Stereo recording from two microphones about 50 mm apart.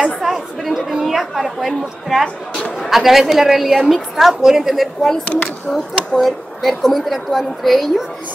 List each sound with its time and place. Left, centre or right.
0.2 s chatter: centre
2.2 s a sound: centre
2.9 s a woman's voice: centre
5.2 s speech: left
6.1 s a woman's voice: centre